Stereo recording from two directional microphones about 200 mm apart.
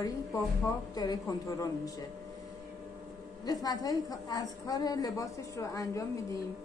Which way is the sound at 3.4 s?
20° left (ahead or behind).